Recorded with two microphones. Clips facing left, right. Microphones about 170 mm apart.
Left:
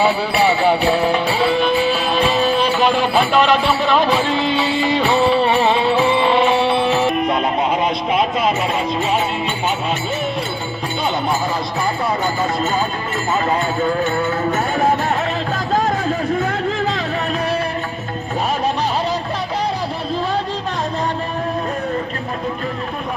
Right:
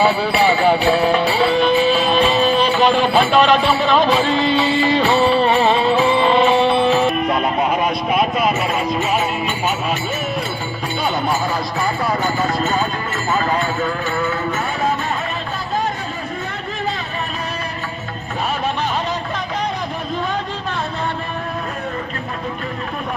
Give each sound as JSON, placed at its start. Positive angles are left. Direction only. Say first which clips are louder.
{"t": 0.0, "sound": "music", "louder": "even", "side_deg": 10}
{"t": 13.5, "sound": "music", "louder": "left 2 dB", "side_deg": 25}